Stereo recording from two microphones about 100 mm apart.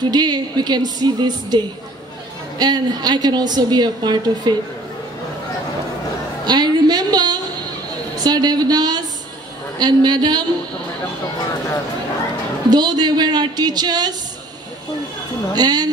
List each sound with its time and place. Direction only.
0.0 s a woman's voice: 45° right (ahead or behind)
2.6 s a woman's voice: 45° right (ahead or behind)
6.4 s a sound: 45° right (ahead or behind)
8.2 s a woman's voice: 40° right (ahead or behind)
12.6 s a woman's voice: 45° right (ahead or behind)
15.5 s a woman's voice: 40° right (ahead or behind)